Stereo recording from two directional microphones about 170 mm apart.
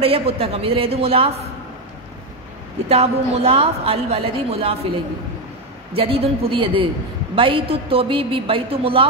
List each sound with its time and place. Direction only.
0.0 s a woman's voice: 35° right (ahead or behind)
2.9 s a woman's voice: 35° right (ahead or behind)
5.9 s a woman's voice: 35° right (ahead or behind)